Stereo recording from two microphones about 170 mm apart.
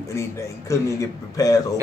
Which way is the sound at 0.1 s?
15° left (ahead or behind).